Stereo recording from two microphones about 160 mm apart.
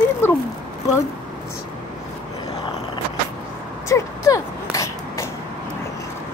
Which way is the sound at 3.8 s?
20° left (ahead or behind).